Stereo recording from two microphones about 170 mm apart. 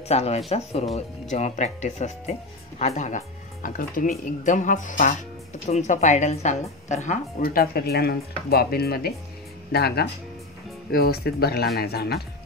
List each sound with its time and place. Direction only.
0.1 s speech: 40° left (ahead or behind); by 12.2 s 65° left (ahead or behind)